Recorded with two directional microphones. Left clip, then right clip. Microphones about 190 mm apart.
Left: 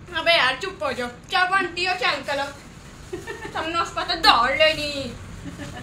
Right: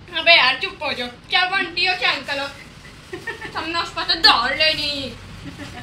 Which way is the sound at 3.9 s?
30° left (ahead or behind).